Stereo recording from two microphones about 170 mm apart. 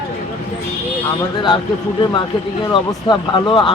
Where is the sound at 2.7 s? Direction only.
25° left (ahead or behind).